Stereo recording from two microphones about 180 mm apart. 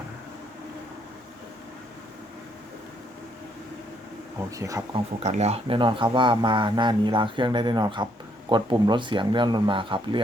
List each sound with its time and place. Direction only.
4.4 s speech: 15° right (ahead or behind)
4.9 s speech: 35° right (ahead or behind)